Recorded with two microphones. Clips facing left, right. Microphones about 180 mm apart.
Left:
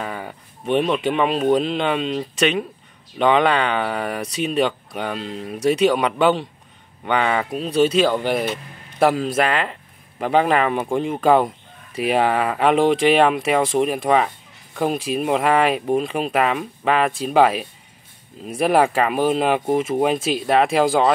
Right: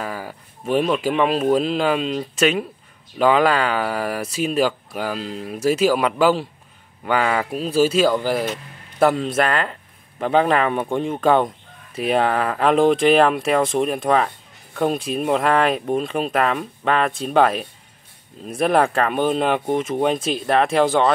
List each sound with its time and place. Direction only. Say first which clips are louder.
0.0 s speech: even; centre (ahead or behind)